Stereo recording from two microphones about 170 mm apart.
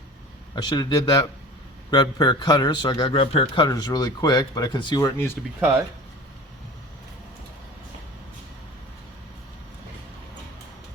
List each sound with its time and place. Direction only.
0.5 s a man's voice: 25° left (ahead or behind)
5.5 s speech: 10° right (ahead or behind)